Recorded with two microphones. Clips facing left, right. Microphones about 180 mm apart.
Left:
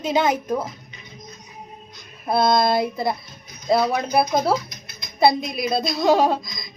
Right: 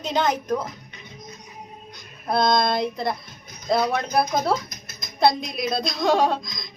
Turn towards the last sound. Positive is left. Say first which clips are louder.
# left 2 dB
turn(degrees=5)  # may be behind; listen again after turning